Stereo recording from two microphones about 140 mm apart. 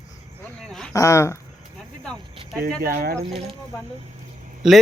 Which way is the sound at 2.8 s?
90° right.